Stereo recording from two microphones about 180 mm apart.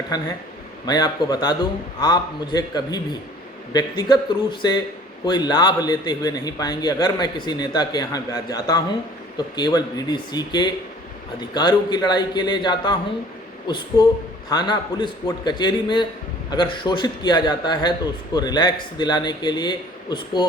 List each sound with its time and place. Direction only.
0.9 s a man's voice: 20° left (ahead or behind)